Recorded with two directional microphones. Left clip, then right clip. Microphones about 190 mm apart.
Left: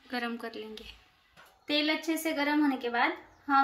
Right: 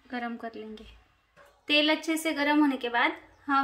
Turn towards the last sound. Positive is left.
turn(degrees=-45)  # may be behind; listen again after turning